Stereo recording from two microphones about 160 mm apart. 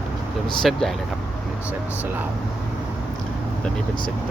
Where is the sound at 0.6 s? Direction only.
Centre (ahead or behind).